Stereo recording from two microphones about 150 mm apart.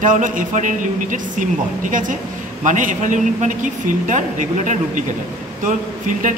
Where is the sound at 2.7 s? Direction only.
60° right (ahead or behind).